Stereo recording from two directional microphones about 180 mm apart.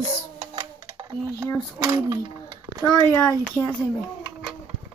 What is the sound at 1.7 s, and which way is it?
Speech, 20° right (ahead or behind).